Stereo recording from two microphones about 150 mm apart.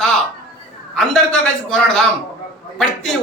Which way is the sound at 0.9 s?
5° left (ahead or behind).